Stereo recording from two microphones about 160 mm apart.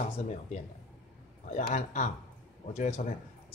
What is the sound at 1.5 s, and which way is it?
Speech, 50° left (ahead or behind).